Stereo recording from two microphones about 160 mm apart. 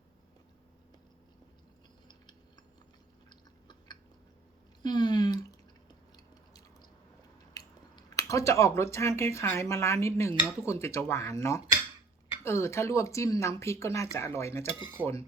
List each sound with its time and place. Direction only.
3.2 s chewing: 25° left (ahead or behind)
4.8 s a sound: 25° left (ahead or behind)
6.1 s chewing: 20° left (ahead or behind)
7.5 s speech: 20° left (ahead or behind)
15.0 s cutlery: 10° right (ahead or behind)